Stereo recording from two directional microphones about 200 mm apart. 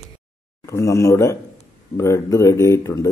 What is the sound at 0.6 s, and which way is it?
Speech, 15° left (ahead or behind).